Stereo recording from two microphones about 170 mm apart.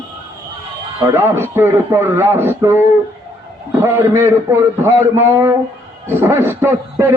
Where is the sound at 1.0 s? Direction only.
15° right (ahead or behind).